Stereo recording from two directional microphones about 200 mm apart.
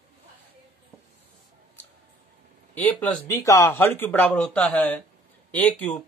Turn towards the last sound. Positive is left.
turn(degrees=5)  # may be behind; listen again after turning